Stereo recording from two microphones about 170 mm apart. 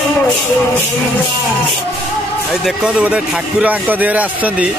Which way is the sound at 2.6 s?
5° right (ahead or behind).